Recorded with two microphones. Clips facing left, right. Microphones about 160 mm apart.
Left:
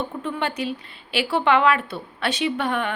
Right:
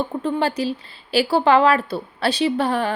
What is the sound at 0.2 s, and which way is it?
Speech, 35° right (ahead or behind).